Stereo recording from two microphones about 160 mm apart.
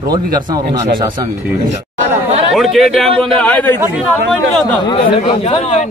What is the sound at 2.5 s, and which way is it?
A man's voice, centre (ahead or behind).